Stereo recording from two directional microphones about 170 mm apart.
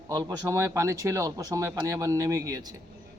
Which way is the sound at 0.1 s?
20° right (ahead or behind).